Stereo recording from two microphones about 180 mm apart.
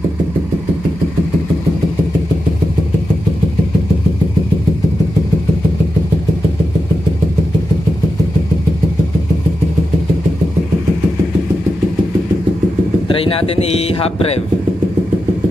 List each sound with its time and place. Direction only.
13.1 s speech: 30° left (ahead or behind)